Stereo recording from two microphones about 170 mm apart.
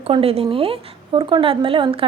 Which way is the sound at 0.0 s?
35° right (ahead or behind).